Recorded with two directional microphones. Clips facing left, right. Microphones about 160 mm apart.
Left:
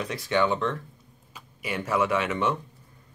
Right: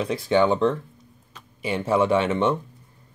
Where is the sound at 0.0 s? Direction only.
30° right (ahead or behind).